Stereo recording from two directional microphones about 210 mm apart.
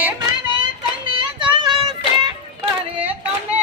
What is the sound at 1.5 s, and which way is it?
Music, 20° right (ahead or behind).